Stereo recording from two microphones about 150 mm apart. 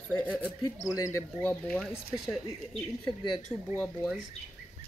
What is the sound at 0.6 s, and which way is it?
Speech, 20° left (ahead or behind).